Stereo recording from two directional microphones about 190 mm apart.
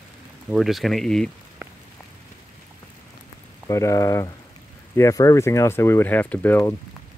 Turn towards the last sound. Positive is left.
turn(degrees=15)  # may be behind; listen again after turning